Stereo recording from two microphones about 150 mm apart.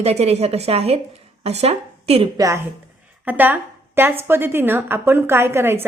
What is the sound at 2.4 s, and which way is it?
A woman's voice, 20° right (ahead or behind).